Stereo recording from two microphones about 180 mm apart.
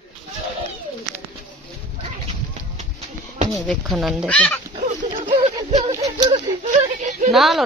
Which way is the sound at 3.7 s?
Centre (ahead or behind).